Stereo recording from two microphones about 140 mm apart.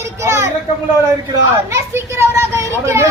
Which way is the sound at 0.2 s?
20° right (ahead or behind).